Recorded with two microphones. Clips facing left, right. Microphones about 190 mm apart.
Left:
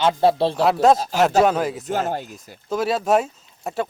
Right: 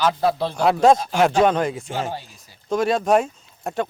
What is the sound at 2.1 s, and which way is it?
Speech, 50° left (ahead or behind).